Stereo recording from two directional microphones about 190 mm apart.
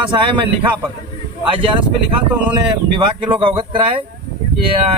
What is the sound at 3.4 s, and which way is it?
Speech, 25° right (ahead or behind).